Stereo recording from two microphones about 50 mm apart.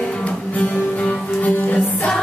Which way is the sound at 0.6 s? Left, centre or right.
Left.